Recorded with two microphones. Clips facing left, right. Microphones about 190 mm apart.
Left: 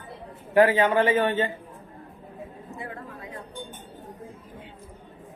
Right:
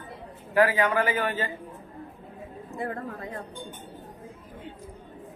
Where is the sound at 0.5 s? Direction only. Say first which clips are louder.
Left 3 dB; 25° left (ahead or behind).